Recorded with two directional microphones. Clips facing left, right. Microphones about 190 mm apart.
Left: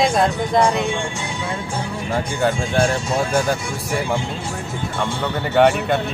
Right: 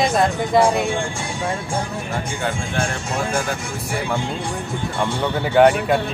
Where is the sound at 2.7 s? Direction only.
35° left (ahead or behind).